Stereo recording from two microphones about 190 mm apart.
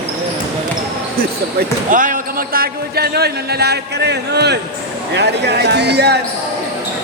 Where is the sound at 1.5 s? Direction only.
45° right (ahead or behind).